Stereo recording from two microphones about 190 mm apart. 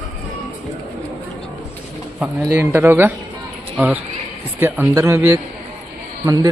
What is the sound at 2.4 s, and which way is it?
Speech, 15° right (ahead or behind).